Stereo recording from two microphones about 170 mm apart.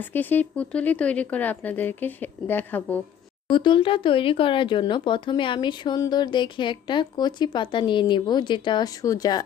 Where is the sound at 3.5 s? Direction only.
30° left (ahead or behind).